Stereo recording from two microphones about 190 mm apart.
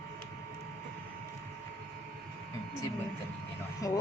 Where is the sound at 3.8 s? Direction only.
20° left (ahead or behind).